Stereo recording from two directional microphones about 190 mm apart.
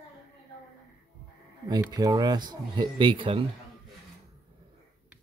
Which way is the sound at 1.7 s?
20° right (ahead or behind).